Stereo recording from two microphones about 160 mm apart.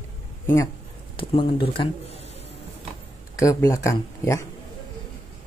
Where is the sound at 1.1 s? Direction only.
35° left (ahead or behind).